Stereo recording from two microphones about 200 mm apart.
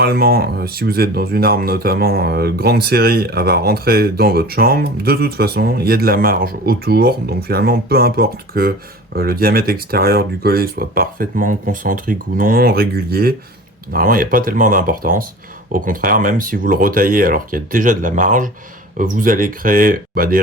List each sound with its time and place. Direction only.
0.0 s speech: 50° right (ahead or behind)